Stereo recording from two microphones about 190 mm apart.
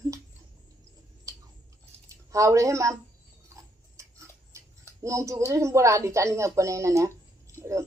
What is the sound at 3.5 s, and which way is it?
Tick-tock, 15° right (ahead or behind).